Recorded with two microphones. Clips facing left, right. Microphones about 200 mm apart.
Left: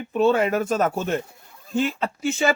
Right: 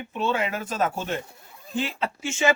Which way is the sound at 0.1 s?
45° left (ahead or behind).